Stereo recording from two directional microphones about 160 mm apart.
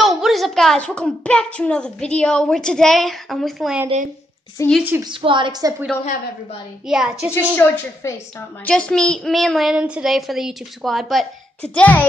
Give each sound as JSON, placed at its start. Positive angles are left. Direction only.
{"t": 0.0, "sound": "a child's voice", "side_deg": 0}
{"t": 4.6, "sound": "a woman's voice", "side_deg": 20}
{"t": 5.0, "sound": "a woman's voice", "side_deg": -30}
{"t": 6.9, "sound": "a child's voice", "side_deg": 0}
{"t": 7.3, "sound": "a woman's voice", "side_deg": 10}